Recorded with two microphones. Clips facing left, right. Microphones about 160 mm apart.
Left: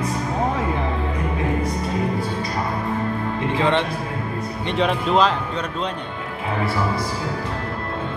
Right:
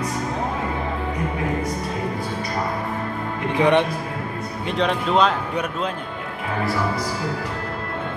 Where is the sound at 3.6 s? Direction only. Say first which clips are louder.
Right 4 dB; 15° right (ahead or behind).